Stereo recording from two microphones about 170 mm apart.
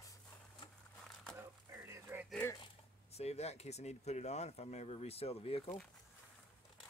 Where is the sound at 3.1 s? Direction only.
40° left (ahead or behind).